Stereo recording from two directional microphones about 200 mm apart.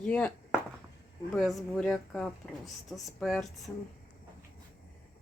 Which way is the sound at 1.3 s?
Centre (ahead or behind).